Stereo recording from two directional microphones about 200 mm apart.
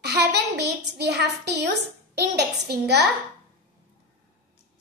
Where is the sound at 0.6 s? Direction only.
55° right (ahead or behind).